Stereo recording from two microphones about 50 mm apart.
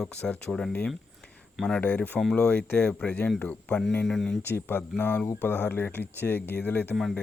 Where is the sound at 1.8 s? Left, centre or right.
Left.